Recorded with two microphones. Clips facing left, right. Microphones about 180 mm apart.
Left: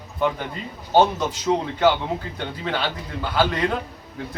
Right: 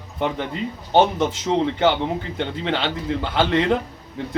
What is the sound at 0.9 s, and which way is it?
Speech, 25° right (ahead or behind).